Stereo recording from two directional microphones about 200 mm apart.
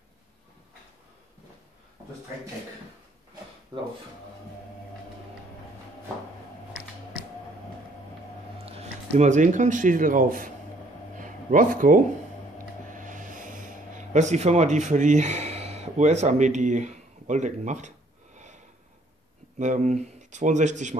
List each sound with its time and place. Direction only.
8.6 s speech: 35° right (ahead or behind)
11.1 s a sound: 40° right (ahead or behind)
19.6 s speech: 35° right (ahead or behind)